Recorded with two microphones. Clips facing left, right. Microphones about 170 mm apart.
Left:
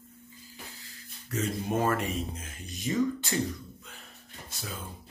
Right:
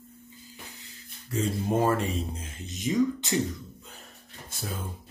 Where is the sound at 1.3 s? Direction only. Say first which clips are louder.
Right 3 dB; 30° right (ahead or behind).